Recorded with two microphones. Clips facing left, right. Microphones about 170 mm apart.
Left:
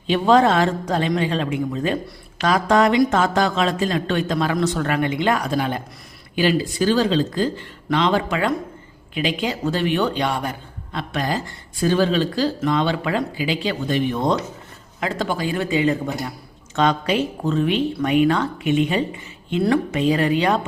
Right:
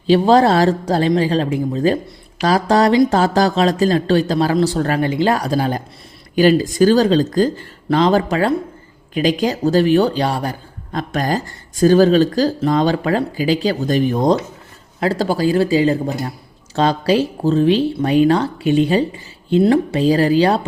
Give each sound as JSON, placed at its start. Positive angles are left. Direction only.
{"t": 0.1, "sound": "a man's voice", "side_deg": -35}